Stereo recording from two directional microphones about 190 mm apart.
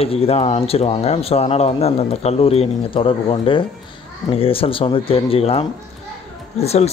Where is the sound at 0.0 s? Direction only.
30° left (ahead or behind).